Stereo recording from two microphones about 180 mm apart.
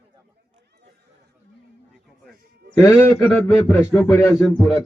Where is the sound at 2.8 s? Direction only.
15° left (ahead or behind); by 4.1 s centre (ahead or behind).